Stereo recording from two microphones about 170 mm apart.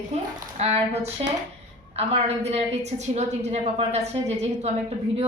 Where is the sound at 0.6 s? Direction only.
40° right (ahead or behind).